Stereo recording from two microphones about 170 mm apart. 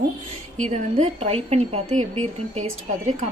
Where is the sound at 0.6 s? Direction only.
40° right (ahead or behind).